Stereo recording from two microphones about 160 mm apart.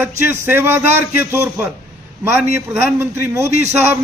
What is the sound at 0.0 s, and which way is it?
Speech, 15° right (ahead or behind).